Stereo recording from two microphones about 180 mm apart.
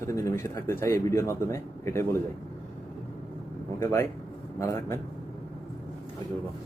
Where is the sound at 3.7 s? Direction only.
15° left (ahead or behind).